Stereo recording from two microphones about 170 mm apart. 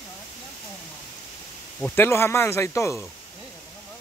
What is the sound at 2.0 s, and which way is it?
Speech, 15° left (ahead or behind).